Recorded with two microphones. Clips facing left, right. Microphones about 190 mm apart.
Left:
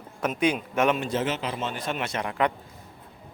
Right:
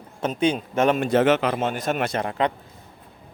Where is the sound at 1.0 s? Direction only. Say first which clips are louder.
Right 9 dB; 60° right (ahead or behind); by 2.5 s 30° right (ahead or behind).